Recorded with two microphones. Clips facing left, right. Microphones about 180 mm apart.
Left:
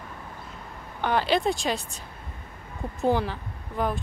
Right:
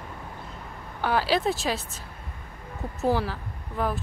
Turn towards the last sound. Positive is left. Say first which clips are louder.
# left 1 dB
turn(degrees=-5)  # may be behind; listen again after turning